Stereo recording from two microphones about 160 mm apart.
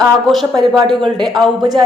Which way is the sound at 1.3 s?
25° right (ahead or behind).